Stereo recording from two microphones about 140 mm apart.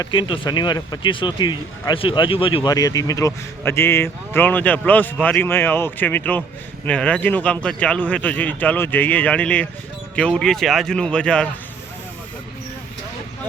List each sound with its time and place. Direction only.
0.0 s speech: 35° left (ahead or behind)
2.6 s a man's voice: 25° left (ahead or behind); by 11.4 s 5° left (ahead or behind)